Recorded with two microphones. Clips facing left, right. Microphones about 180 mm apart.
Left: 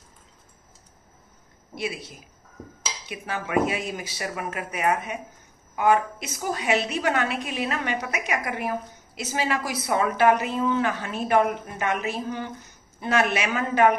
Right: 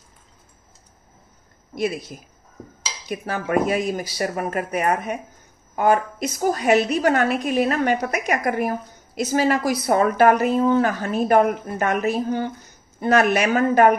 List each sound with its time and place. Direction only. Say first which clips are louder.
1.8 s a woman's voice: right 7 dB; 40° right (ahead or behind)